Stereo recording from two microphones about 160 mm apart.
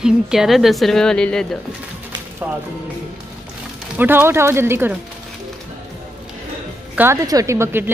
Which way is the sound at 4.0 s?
10° right (ahead or behind).